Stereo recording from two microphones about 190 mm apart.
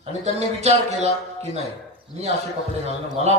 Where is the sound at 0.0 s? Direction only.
35° right (ahead or behind).